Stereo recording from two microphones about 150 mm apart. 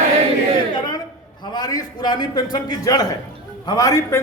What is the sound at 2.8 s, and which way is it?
A man's voice, 25° left (ahead or behind).